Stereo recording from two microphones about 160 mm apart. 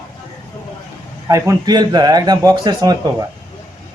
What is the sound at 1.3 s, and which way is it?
Speech, 20° right (ahead or behind).